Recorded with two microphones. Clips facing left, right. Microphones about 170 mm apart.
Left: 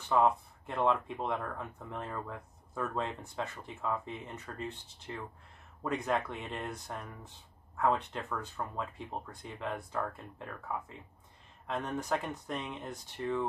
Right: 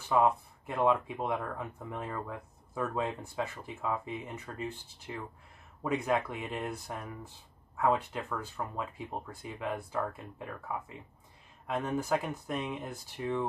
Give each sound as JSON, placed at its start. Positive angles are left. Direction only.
{"t": 0.1, "sound": "speech", "side_deg": -5}